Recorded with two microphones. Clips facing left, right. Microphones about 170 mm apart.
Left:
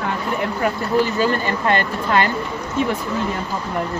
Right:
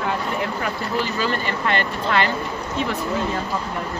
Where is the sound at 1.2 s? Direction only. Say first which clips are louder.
Left 4 dB; 45° left (ahead or behind).